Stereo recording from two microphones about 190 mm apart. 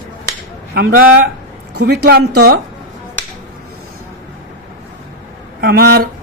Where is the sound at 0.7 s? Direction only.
60° right (ahead or behind).